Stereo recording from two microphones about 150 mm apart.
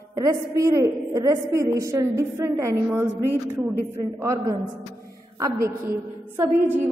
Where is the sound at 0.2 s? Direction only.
20° right (ahead or behind).